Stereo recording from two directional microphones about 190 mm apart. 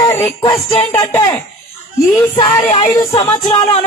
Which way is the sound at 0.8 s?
10° left (ahead or behind).